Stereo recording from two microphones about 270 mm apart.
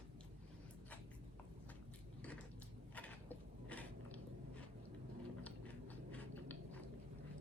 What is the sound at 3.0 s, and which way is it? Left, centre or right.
Biting, centre.